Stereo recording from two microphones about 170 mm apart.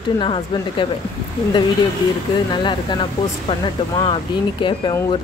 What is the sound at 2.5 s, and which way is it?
Speech, 25° left (ahead or behind).